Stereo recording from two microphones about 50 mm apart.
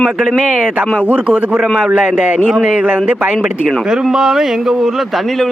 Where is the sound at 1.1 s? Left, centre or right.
Right.